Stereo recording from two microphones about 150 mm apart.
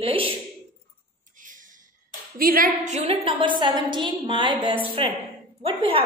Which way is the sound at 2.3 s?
70° right (ahead or behind).